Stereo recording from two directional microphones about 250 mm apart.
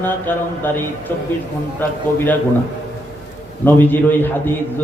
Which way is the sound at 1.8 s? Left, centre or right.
Centre.